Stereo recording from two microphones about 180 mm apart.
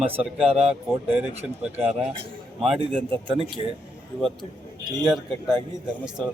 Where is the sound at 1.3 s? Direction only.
35° right (ahead or behind).